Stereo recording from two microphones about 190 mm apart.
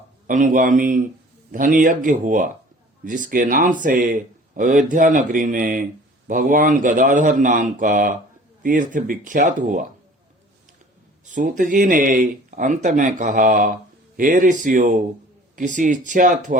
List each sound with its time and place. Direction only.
0.3 s speech: 45° right (ahead or behind)
11.3 s speech: 40° right (ahead or behind)